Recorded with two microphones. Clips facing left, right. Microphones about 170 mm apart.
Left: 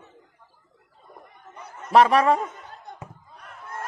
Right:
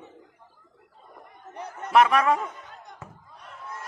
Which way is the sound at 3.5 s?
55° left (ahead or behind).